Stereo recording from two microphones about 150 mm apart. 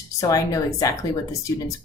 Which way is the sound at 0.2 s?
25° left (ahead or behind).